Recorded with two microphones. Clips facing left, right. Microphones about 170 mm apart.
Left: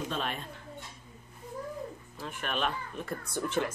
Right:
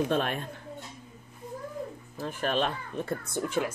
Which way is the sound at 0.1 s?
55° right (ahead or behind).